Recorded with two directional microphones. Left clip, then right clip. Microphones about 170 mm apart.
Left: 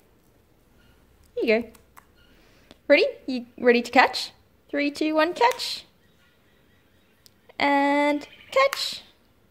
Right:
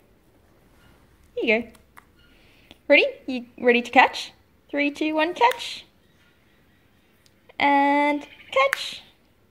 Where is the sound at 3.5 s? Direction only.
20° left (ahead or behind).